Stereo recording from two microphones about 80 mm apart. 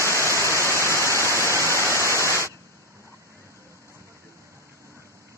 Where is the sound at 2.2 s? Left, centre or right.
Right.